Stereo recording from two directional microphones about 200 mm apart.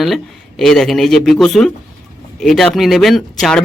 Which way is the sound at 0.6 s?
Centre (ahead or behind).